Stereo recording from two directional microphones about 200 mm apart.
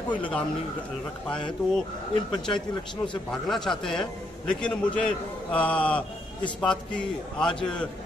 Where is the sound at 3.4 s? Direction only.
Centre (ahead or behind).